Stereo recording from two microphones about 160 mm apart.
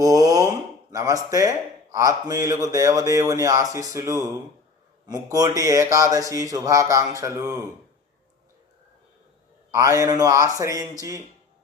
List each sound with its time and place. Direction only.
0.0 s speech: 20° right (ahead or behind)
9.7 s speech: 20° right (ahead or behind)